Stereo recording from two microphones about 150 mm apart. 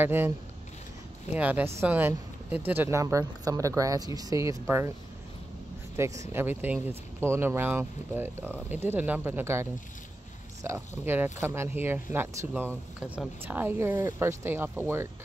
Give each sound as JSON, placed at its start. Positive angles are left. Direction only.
{"t": 0.0, "sound": "speech", "side_deg": -15}
{"t": 1.3, "sound": "speech", "side_deg": -10}
{"t": 5.9, "sound": "speech", "side_deg": -20}